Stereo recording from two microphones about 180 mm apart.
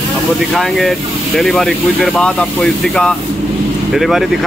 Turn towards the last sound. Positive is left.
turn(degrees=0)  # may be behind; listen again after turning